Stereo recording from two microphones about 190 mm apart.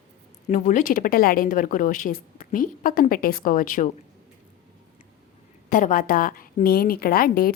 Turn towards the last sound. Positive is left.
turn(degrees=50)  # may be behind; listen again after turning